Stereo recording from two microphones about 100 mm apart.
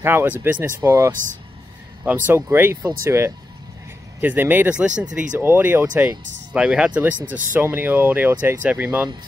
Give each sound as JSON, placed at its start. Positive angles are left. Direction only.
{"t": 0.0, "sound": "speech", "side_deg": -25}
{"t": 0.7, "sound": "speech", "side_deg": -30}
{"t": 4.2, "sound": "speech", "side_deg": -20}
{"t": 5.4, "sound": "speech", "side_deg": -20}